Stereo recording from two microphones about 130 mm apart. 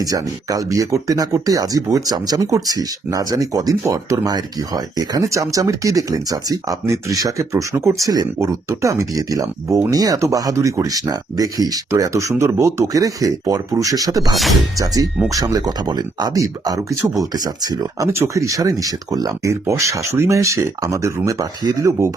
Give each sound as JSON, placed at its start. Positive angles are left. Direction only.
{"t": 0.0, "sound": "speech", "side_deg": -25}